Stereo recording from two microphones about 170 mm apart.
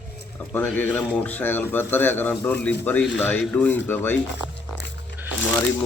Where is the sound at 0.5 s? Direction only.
10° left (ahead or behind).